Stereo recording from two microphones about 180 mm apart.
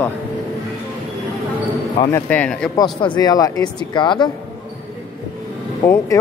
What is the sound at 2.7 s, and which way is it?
Speech, 25° left (ahead or behind).